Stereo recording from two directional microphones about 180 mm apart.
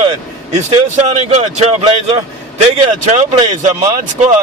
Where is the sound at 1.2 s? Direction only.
40° right (ahead or behind).